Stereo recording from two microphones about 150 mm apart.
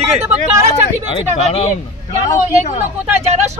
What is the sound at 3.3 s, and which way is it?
Speech, 50° right (ahead or behind).